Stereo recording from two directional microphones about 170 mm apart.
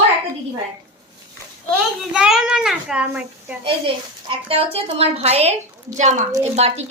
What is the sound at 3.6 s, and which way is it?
A child's voice, 30° right (ahead or behind).